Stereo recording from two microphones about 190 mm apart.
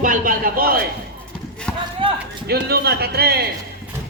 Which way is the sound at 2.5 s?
55° right (ahead or behind).